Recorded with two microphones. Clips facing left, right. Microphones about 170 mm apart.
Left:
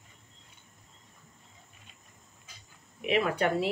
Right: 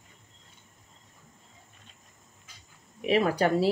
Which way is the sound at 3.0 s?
35° right (ahead or behind).